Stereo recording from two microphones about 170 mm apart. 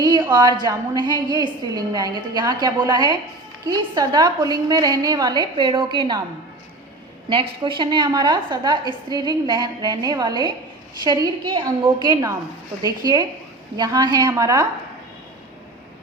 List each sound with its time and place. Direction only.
0.0 s a woman's voice: 25° right (ahead or behind)
7.6 s a woman's voice: 25° right (ahead or behind)